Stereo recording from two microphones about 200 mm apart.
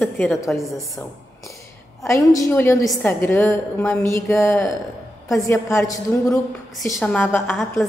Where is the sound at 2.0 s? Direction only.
15° left (ahead or behind).